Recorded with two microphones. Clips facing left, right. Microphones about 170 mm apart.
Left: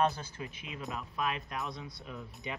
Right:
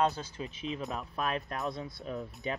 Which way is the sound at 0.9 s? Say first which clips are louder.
Left 2 dB; 40° right (ahead or behind).